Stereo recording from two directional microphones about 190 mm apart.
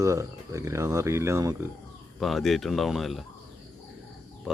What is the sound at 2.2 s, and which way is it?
Speech, centre (ahead or behind).